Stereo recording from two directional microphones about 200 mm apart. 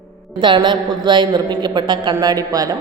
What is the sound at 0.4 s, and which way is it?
A woman's voice, 25° right (ahead or behind).